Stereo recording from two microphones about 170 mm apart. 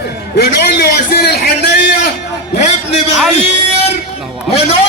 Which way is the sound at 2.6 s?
40° left (ahead or behind).